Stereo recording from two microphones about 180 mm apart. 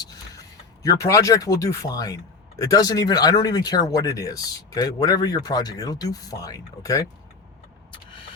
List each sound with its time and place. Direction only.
0.0 s speech: 20° left (ahead or behind)